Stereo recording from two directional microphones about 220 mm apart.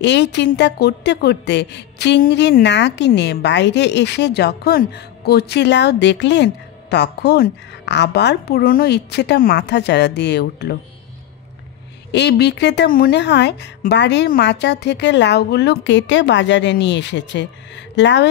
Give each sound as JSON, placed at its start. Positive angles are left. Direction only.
{"t": 0.0, "sound": "a woman's voice", "side_deg": 50}
{"t": 12.1, "sound": "a woman's voice", "side_deg": 50}